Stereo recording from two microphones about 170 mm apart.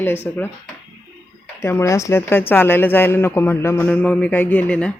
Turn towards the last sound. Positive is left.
turn(degrees=5)  # may be behind; listen again after turning